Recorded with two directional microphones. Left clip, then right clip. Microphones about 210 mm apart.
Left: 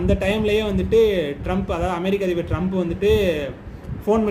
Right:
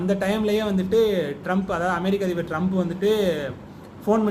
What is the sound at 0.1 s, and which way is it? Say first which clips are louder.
Speech: left 2 dB; 5° left (ahead or behind).